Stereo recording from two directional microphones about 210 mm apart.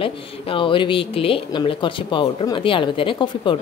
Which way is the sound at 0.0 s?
25° left (ahead or behind).